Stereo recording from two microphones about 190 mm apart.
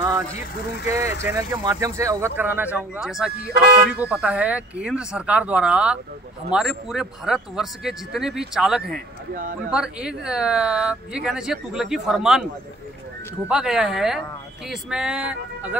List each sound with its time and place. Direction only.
0.8 s speech: 15° right (ahead or behind)
9.3 s speech: 45° right (ahead or behind)
9.7 s speech: 5° right (ahead or behind)
13.5 s speech: 5° right (ahead or behind)